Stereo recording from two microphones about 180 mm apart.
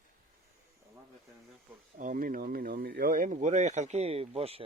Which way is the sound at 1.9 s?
45° right (ahead or behind).